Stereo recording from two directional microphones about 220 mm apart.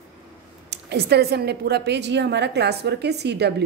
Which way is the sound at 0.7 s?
50° right (ahead or behind).